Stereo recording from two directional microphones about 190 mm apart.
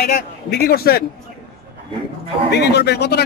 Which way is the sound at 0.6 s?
55° left (ahead or behind).